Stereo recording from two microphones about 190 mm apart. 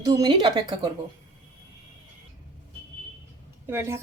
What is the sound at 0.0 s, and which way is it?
Speech, 20° right (ahead or behind).